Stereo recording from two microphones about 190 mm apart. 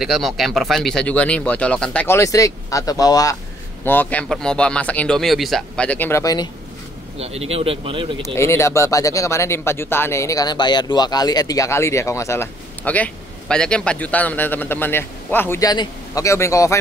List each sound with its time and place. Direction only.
0.0 s speech: centre (ahead or behind); by 6.5 s 20° left (ahead or behind)
7.2 s speech: 35° right (ahead or behind)
8.2 s speech: 15° left (ahead or behind)